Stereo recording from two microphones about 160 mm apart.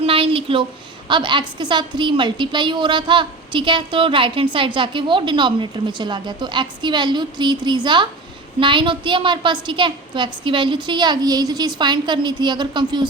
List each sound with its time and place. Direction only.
0.0 s a woman's voice: 35° right (ahead or behind)